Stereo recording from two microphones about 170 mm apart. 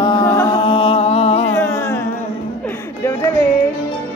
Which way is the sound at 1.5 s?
15° left (ahead or behind).